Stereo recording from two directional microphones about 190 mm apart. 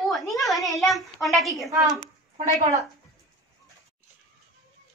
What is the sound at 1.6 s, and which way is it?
Speech, 15° right (ahead or behind).